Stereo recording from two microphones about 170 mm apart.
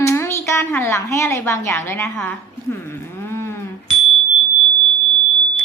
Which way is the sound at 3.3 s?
15° left (ahead or behind).